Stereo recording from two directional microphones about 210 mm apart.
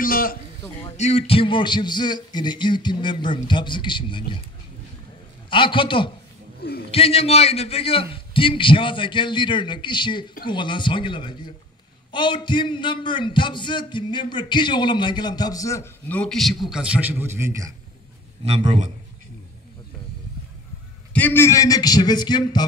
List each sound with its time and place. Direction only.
0.0 s a man's voice: 45° left (ahead or behind)
0.9 s a man's voice: 30° left (ahead or behind)
5.5 s a man's voice: 25° left (ahead or behind); by 17.6 s 10° right (ahead or behind)
21.1 s a man's voice: 10° left (ahead or behind)